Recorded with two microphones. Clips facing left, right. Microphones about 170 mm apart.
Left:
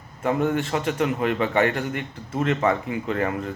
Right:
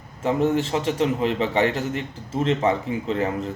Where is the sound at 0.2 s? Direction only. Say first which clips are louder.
Right 2 dB; 30° right (ahead or behind).